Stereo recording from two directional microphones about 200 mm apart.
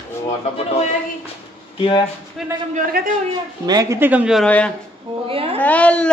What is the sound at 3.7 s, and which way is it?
Speech, 15° right (ahead or behind).